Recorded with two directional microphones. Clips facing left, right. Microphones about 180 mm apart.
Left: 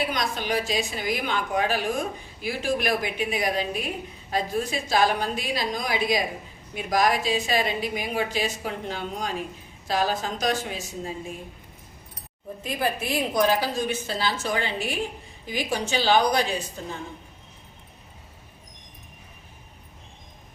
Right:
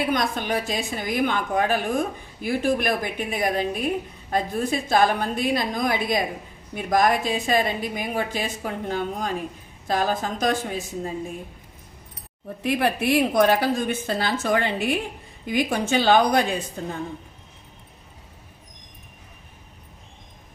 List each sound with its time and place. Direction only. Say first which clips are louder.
0.1 s a woman's voice: right 3 dB; 55° right (ahead or behind)
12.6 s a woman's voice: right 6 dB; 65° right (ahead or behind)